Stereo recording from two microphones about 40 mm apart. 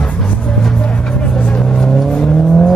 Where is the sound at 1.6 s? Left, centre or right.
Centre.